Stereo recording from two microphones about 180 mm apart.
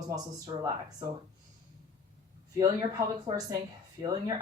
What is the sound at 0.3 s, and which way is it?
Speech, 15° right (ahead or behind).